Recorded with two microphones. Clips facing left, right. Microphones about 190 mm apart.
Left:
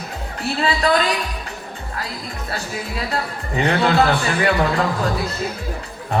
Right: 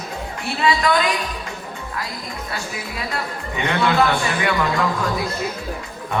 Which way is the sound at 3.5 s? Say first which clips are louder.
Left 2 dB; 35° left (ahead or behind).